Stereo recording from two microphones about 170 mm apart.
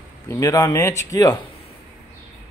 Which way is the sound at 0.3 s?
20° left (ahead or behind).